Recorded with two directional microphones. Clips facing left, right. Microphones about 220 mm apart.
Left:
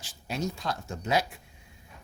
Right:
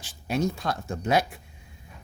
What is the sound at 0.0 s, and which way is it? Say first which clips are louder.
Speech: right 6 dB; 55° right (ahead or behind).